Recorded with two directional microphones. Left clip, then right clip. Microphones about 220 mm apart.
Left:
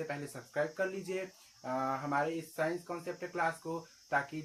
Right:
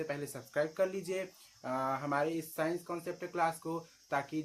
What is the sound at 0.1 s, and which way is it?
Speech, 25° right (ahead or behind).